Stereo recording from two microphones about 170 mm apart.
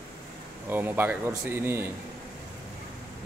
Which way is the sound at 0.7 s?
10° right (ahead or behind).